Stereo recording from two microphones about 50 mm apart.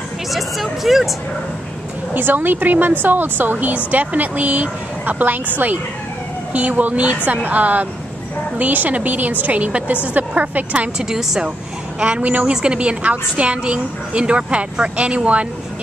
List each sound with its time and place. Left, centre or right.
0.3 s speech: centre
2.1 s a woman's voice: right
6.5 s a woman's voice: right
11.0 s a woman's voice: centre
12.0 s a woman's voice: right